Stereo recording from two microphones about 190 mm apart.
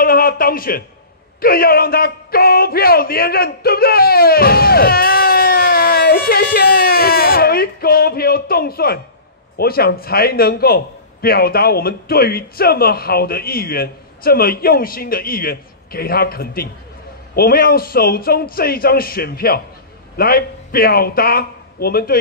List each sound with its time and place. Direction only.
0.0 s a man's voice: 50° left (ahead or behind)